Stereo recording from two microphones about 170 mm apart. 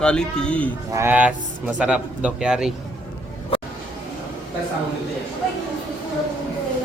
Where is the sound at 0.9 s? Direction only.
15° right (ahead or behind).